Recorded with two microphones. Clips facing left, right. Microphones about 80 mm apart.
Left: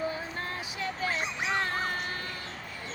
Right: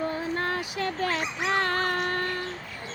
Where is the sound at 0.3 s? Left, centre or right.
Right.